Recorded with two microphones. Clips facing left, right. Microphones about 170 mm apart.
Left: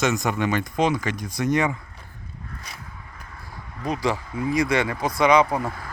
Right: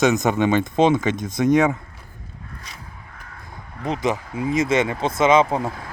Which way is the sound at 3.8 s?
20° right (ahead or behind).